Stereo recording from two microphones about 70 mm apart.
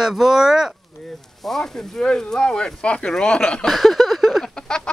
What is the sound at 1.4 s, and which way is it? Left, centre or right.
Speech, centre.